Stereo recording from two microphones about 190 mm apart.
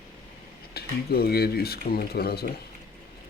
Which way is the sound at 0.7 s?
55° left (ahead or behind).